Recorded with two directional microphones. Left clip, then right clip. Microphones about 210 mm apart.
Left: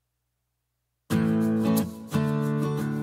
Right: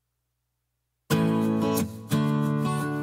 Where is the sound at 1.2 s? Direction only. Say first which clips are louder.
Even; centre (ahead or behind).